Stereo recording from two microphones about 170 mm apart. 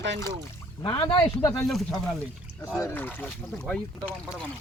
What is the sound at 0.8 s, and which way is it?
Speech, 25° left (ahead or behind).